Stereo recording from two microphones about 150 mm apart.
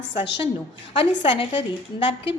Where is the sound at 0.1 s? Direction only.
35° left (ahead or behind).